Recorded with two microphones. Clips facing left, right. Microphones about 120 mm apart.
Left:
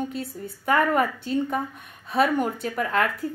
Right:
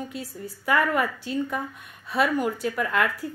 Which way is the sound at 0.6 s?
40° left (ahead or behind).